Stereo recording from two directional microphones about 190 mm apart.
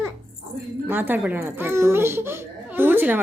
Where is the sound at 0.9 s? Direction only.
10° right (ahead or behind).